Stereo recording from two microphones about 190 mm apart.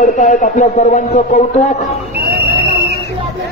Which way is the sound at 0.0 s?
40° left (ahead or behind).